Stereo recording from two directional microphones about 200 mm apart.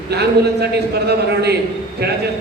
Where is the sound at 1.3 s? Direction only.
55° right (ahead or behind).